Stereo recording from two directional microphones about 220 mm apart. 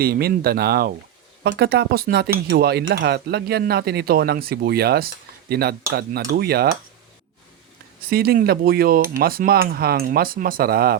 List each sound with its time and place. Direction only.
0.0 s speech: 45° right (ahead or behind)
8.1 s speech: 45° right (ahead or behind)